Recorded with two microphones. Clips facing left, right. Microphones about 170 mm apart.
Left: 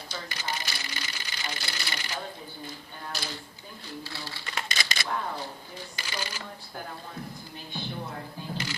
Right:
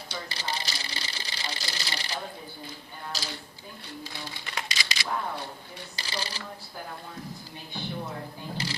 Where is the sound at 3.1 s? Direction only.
60° left (ahead or behind).